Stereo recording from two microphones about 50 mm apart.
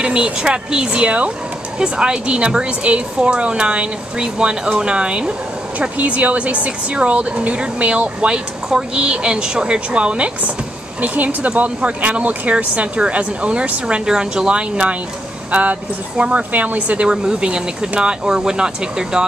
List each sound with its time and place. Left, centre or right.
0.0 s speech: right
5.8 s speech: right
15.5 s speech: right
17.1 s speech: centre